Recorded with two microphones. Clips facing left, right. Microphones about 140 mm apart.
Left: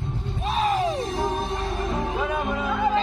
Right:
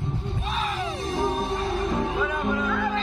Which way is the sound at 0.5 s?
40° left (ahead or behind).